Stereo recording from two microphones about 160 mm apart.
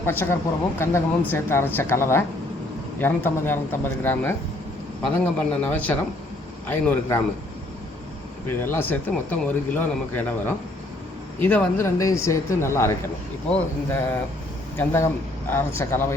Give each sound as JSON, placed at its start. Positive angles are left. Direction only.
{"t": 0.0, "sound": "speech", "side_deg": 15}
{"t": 8.4, "sound": "speech", "side_deg": 15}